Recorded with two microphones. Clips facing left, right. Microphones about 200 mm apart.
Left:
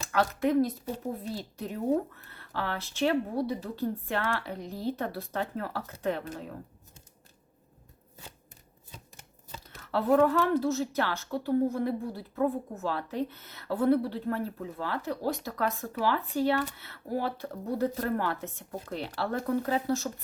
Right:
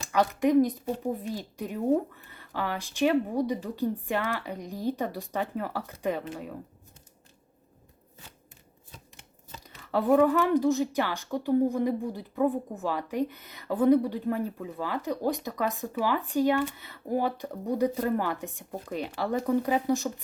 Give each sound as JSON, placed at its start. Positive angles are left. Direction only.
{"t": 0.0, "sound": "a woman's voice", "side_deg": -15}
{"t": 9.6, "sound": "speech", "side_deg": -15}